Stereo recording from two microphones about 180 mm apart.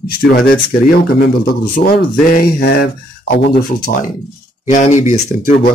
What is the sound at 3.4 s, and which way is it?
Speech, 45° left (ahead or behind).